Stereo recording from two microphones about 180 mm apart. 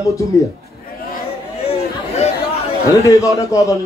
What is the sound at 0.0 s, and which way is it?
Speech, 15° left (ahead or behind).